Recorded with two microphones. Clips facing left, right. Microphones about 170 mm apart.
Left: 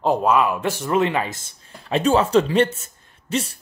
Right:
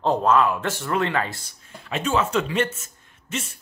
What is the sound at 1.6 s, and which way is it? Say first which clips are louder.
Speech: left 7 dB; 35° left (ahead or behind).